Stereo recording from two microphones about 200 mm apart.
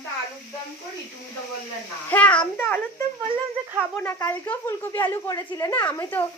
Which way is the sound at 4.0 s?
10° left (ahead or behind).